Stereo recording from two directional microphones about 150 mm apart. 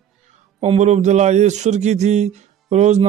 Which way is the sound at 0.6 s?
50° right (ahead or behind).